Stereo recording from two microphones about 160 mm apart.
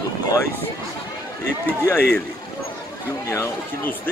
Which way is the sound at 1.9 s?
10° left (ahead or behind).